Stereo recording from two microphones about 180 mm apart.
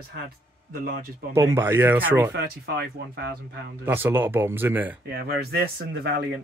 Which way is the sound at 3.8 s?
10° right (ahead or behind).